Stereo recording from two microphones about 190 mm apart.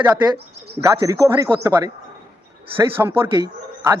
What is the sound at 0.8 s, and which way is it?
A man's voice, 15° right (ahead or behind).